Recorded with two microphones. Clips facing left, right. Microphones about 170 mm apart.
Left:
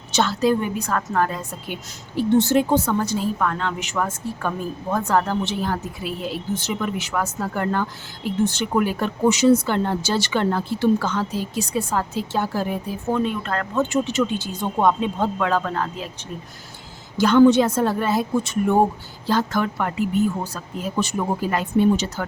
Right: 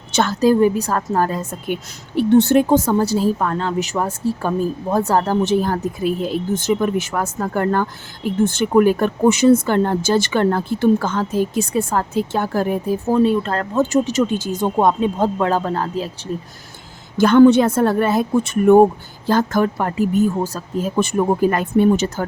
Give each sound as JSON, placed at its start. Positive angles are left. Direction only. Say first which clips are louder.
{"t": 0.1, "sound": "a woman's voice", "louder": "right 4 dB", "side_deg": -50}
{"t": 13.1, "sound": "speech", "louder": "right 6 dB", "side_deg": -35}
{"t": 17.2, "sound": "a woman's voice", "louder": "right 4 dB", "side_deg": -55}
{"t": 19.3, "sound": "a woman's voice", "louder": "right 5 dB", "side_deg": -45}